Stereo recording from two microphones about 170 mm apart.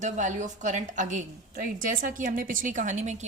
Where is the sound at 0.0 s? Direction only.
45° right (ahead or behind).